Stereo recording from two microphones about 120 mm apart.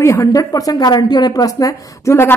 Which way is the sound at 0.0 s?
25° left (ahead or behind).